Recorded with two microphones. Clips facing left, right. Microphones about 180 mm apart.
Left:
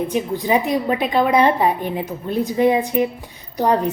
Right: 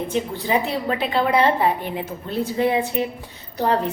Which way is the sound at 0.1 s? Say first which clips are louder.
Left 3 dB; 15° left (ahead or behind).